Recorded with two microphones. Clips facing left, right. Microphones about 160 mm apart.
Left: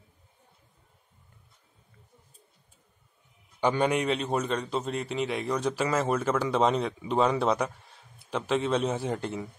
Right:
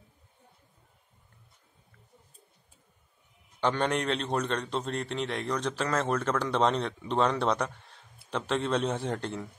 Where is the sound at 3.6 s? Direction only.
10° left (ahead or behind).